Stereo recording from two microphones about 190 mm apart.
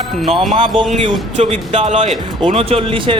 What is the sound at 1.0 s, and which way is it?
A man's voice, 35° right (ahead or behind).